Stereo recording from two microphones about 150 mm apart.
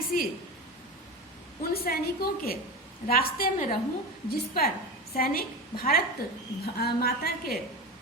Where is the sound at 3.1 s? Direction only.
75° left (ahead or behind).